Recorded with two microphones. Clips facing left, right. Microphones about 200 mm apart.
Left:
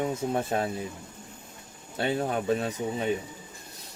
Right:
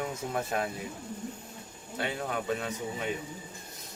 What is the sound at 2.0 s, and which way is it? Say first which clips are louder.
Speech: left 6 dB; 30° left (ahead or behind).